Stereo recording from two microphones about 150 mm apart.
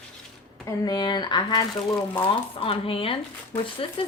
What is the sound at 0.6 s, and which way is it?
Speech, 30° left (ahead or behind).